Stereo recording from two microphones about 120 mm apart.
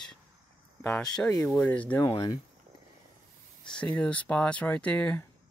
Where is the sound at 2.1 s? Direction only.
40° left (ahead or behind).